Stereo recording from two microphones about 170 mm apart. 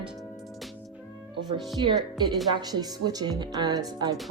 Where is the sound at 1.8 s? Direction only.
30° right (ahead or behind).